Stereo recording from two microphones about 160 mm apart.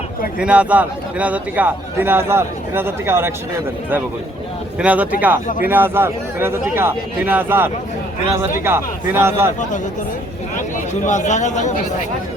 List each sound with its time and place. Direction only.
0.3 s a man's voice: 10° right (ahead or behind)
4.8 s a man's voice: 10° right (ahead or behind)
11.0 s a man's voice: 50° left (ahead or behind)